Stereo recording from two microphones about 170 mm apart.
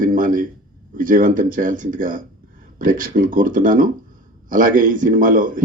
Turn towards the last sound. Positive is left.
turn(degrees=-50)  # may be behind; listen again after turning